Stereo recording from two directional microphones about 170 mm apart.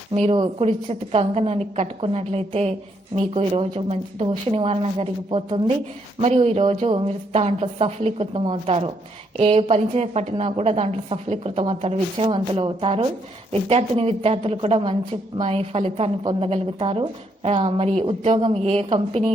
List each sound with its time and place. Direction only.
0.1 s a woman's voice: 35° right (ahead or behind)